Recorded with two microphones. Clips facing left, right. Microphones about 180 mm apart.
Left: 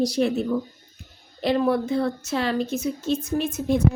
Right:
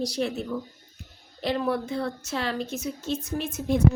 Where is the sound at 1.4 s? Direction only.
65° left (ahead or behind).